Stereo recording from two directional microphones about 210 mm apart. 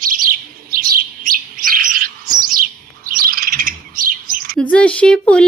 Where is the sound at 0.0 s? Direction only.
40° right (ahead or behind).